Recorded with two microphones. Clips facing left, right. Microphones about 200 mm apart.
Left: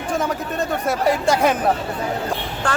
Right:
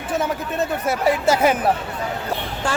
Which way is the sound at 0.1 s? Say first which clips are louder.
Even; 5° right (ahead or behind).